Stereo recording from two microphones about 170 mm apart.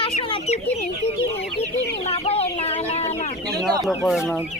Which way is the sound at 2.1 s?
35° left (ahead or behind).